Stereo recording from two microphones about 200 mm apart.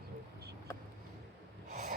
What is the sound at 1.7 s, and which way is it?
Snort, 35° right (ahead or behind).